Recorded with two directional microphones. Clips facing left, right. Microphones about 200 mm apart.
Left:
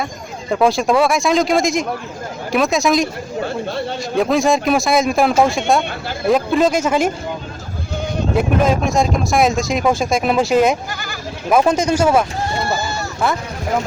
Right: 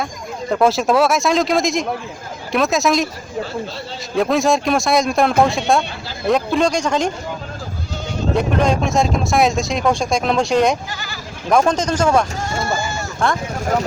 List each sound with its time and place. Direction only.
0.5 s speech: centre (ahead or behind)
3.4 s speech: 55° left (ahead or behind)
4.1 s speech: centre (ahead or behind)
8.4 s speech: 5° left (ahead or behind)
10.9 s speech: 50° left (ahead or behind)
11.4 s speech: 5° left (ahead or behind)
13.2 s speech: 5° left (ahead or behind)